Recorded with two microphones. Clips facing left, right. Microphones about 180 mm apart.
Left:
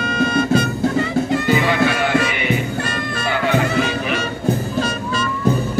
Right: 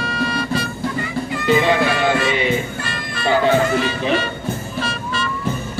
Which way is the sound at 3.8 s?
40° left (ahead or behind).